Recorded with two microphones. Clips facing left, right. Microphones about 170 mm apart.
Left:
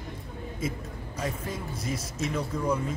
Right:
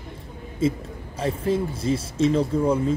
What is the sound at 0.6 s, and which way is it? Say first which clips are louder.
Speech: right 11 dB; 30° right (ahead or behind).